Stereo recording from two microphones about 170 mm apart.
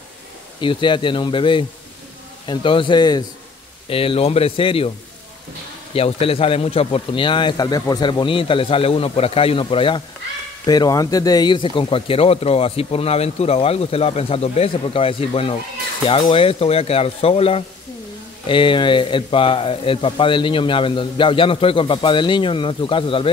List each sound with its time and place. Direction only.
0.6 s speech: 30° left (ahead or behind)
5.9 s speech: 35° left (ahead or behind)